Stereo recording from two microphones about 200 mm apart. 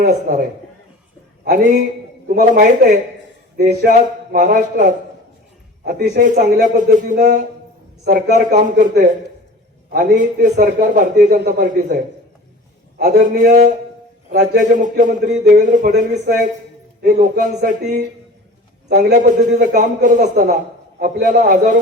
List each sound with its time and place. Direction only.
0.0 s speech: 40° right (ahead or behind)
2.2 s a man's voice: 45° right (ahead or behind)
9.9 s a man's voice: 40° right (ahead or behind)
13.0 s a man's voice: 40° right (ahead or behind)